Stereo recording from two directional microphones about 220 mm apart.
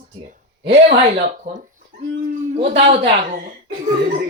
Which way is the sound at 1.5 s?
40° right (ahead or behind).